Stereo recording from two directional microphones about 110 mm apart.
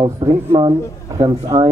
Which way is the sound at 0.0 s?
45° right (ahead or behind).